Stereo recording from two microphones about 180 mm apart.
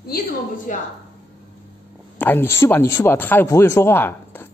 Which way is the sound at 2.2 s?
10° left (ahead or behind).